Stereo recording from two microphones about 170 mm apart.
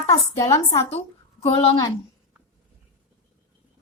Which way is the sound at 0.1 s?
20° left (ahead or behind).